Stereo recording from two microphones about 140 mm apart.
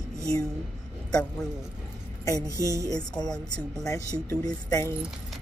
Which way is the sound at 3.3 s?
5° left (ahead or behind).